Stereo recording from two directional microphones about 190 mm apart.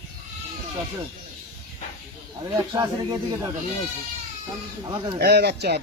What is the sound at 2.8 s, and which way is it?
Speech, 20° right (ahead or behind).